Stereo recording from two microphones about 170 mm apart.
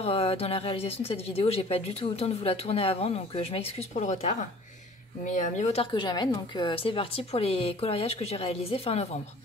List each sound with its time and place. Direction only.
0.0 s speech: 35° left (ahead or behind)
5.9 s speech: 25° left (ahead or behind)